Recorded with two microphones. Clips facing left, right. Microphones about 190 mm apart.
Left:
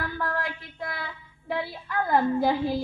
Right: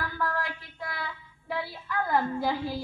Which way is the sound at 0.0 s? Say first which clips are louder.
Left 1 dB; 25° left (ahead or behind).